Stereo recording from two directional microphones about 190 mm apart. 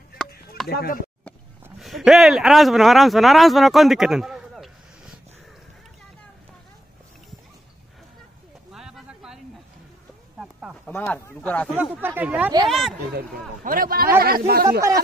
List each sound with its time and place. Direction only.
0.7 s speech: 55° left (ahead or behind)
1.8 s speech: centre (ahead or behind)
8.7 s a sound: centre (ahead or behind)
10.9 s speech: 10° left (ahead or behind)
11.7 s speech: 10° right (ahead or behind)
13.7 s speech: 50° right (ahead or behind)